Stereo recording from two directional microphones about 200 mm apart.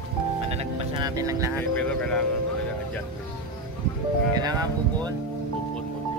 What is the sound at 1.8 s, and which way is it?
Speech, 5° left (ahead or behind).